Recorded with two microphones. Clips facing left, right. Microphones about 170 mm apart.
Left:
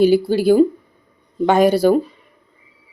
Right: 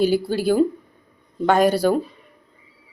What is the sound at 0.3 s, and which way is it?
Speech, 10° left (ahead or behind).